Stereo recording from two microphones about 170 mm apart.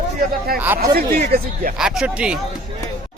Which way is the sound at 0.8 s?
65° right (ahead or behind).